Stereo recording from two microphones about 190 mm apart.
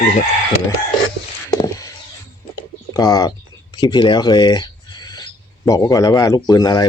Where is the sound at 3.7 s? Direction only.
25° left (ahead or behind).